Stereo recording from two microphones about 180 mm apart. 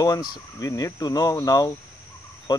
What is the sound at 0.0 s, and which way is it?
Speech, 20° left (ahead or behind).